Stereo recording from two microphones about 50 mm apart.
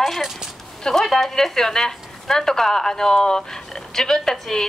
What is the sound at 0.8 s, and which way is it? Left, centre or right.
Speech, centre.